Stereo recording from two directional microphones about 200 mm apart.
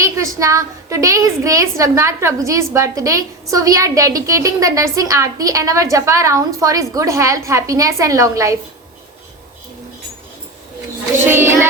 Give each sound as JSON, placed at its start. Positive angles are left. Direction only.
{"t": 0.0, "sound": "a woman's voice", "side_deg": -15}
{"t": 11.2, "sound": "a woman's voice", "side_deg": -10}